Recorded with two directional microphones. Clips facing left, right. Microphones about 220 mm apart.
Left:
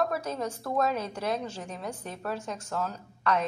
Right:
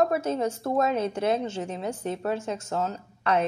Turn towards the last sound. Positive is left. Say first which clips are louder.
# right 3 dB
turn(degrees=-25)  # may be behind; listen again after turning